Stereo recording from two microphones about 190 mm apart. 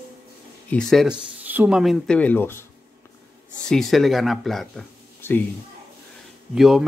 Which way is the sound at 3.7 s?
Centre (ahead or behind).